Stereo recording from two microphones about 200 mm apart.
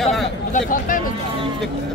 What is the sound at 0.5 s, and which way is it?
Speech, 45° left (ahead or behind).